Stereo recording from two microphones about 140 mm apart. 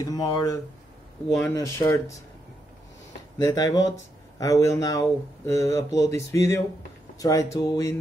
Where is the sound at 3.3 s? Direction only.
25° left (ahead or behind).